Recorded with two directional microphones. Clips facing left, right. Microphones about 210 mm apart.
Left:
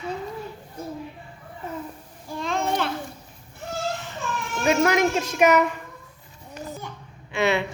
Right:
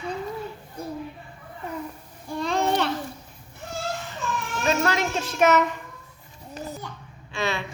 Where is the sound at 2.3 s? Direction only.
Centre (ahead or behind).